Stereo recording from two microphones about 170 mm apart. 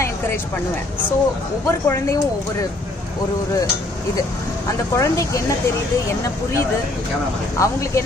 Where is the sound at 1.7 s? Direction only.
15° left (ahead or behind).